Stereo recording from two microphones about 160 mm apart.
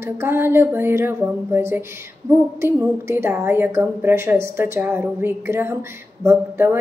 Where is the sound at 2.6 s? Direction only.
15° right (ahead or behind).